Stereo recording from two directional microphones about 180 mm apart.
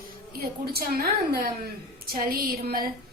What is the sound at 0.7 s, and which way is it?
A woman's voice, 55° right (ahead or behind).